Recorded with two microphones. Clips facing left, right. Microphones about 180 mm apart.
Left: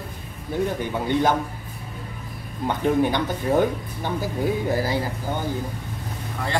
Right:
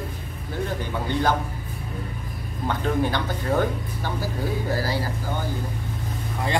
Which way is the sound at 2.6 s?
15° left (ahead or behind).